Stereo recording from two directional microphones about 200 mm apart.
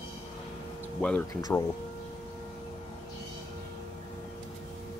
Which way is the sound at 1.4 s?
15° left (ahead or behind).